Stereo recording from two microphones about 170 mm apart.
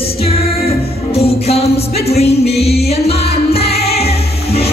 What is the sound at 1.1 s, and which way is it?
Music, 35° left (ahead or behind).